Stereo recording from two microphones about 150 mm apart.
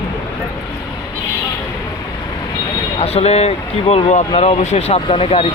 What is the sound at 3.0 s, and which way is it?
Speech, 45° left (ahead or behind).